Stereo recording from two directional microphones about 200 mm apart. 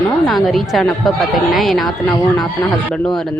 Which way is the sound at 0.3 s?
Centre (ahead or behind).